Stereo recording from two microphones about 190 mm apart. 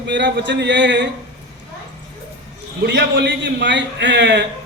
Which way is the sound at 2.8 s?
70° right (ahead or behind).